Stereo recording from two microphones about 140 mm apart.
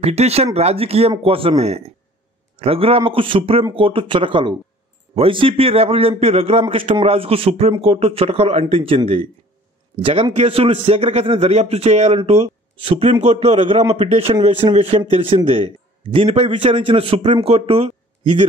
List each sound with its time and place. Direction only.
0.0 s a man's voice: 50° right (ahead or behind)
2.5 s a man's voice: 45° right (ahead or behind)
10.3 s a man's voice: 40° right (ahead or behind)